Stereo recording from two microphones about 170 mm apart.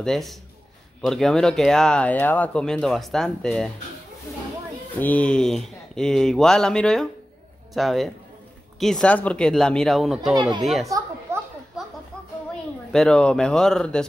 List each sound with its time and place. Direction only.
0.0 s speech: centre (ahead or behind)
4.9 s speech: 10° left (ahead or behind)
10.9 s a sound: 15° right (ahead or behind)
12.9 s speech: 5° left (ahead or behind)